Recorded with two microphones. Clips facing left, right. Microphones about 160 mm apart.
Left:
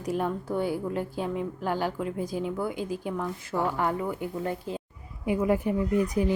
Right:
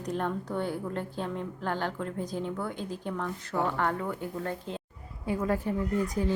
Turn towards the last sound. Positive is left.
turn(degrees=15)  # may be behind; listen again after turning